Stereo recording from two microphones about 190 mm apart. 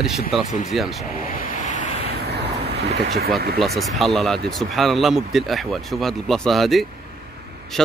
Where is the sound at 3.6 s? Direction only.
Centre (ahead or behind).